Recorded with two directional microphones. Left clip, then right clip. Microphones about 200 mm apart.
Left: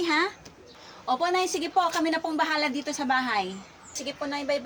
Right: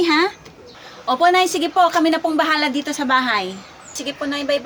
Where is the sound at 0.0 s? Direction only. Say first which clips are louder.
Right 9 dB; 15° right (ahead or behind).